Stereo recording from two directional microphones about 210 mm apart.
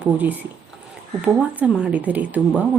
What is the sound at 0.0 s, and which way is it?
Speech, 10° right (ahead or behind).